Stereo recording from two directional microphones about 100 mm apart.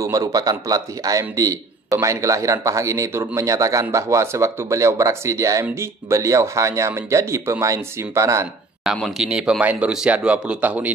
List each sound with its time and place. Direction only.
0.0 s a man's voice: 40° right (ahead or behind)
8.8 s a man's voice: 5° left (ahead or behind)
9.2 s speech: 5° right (ahead or behind)